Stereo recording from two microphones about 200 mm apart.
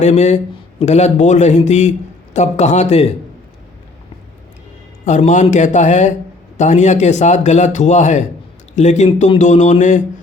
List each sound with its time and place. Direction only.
0.0 s a man's voice: 35° left (ahead or behind)
5.0 s a man's voice: 35° left (ahead or behind)